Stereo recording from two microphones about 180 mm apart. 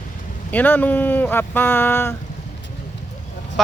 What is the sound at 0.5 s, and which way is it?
Speech, 10° left (ahead or behind).